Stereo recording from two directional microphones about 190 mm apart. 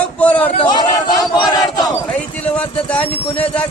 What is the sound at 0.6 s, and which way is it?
Speech, 25° left (ahead or behind).